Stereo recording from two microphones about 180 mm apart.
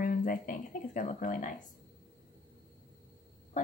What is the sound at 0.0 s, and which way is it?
Speech, 50° left (ahead or behind).